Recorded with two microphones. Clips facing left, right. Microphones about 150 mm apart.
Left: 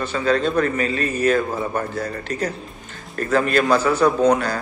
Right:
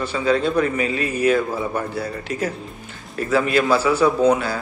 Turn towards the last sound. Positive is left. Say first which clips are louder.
# even
turn(degrees=-5)  # may be behind; listen again after turning